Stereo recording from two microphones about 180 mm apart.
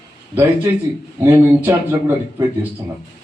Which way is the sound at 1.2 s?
15° right (ahead or behind).